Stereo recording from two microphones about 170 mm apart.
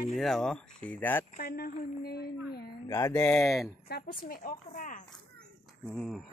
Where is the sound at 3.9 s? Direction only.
65° left (ahead or behind).